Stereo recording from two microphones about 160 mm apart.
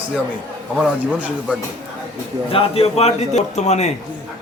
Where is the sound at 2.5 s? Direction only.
35° left (ahead or behind).